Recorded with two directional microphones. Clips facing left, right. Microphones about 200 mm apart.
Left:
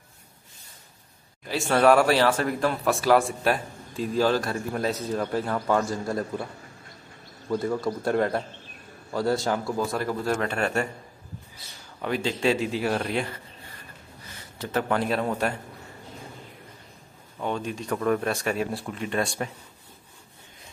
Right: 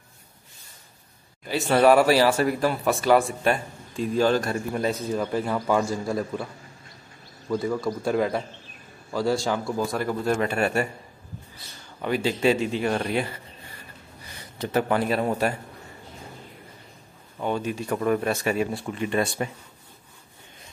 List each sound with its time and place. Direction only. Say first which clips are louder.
1.5 s speech: right 1 dB; 5° right (ahead or behind)
7.7 s speech: even; centre (ahead or behind)
12.0 s speech: right 3 dB; 5° right (ahead or behind)
14.6 s a man's voice: right 2 dB; 10° right (ahead or behind)
17.4 s speech: right 3 dB; 5° right (ahead or behind)